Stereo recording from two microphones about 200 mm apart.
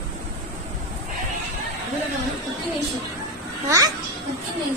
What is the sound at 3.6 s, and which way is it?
Speech, 15° right (ahead or behind).